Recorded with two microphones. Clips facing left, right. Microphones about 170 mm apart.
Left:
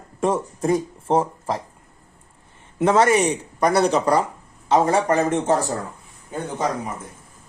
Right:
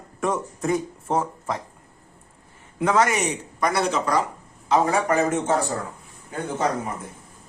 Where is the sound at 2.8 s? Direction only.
30° left (ahead or behind).